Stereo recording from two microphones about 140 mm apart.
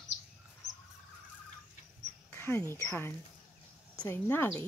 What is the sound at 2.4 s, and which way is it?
Speech, 15° left (ahead or behind).